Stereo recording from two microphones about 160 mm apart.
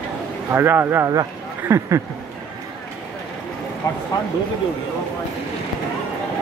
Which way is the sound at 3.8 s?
20° left (ahead or behind).